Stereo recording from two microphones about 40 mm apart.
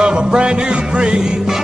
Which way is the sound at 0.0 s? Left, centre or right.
Right.